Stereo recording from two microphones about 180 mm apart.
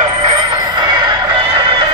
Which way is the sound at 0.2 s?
25° right (ahead or behind).